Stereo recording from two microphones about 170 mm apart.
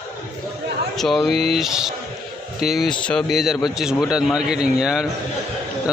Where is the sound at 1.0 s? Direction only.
Centre (ahead or behind).